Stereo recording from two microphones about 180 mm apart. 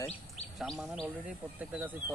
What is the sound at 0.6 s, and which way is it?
Speech, centre (ahead or behind).